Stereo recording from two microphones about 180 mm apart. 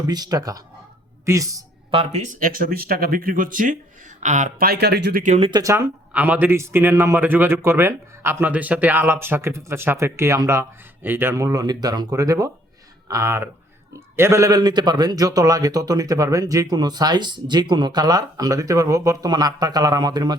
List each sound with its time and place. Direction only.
0.1 s a man's voice: 20° right (ahead or behind)
1.9 s speech: 35° right (ahead or behind)
4.6 s speech: 60° right (ahead or behind)
5.2 s speech: 40° right (ahead or behind)
5.5 s a man's voice: 20° right (ahead or behind)